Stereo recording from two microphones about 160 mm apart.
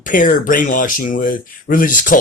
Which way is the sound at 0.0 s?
55° left (ahead or behind).